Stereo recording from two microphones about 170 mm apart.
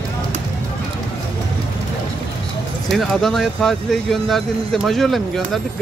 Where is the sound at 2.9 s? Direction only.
Centre (ahead or behind).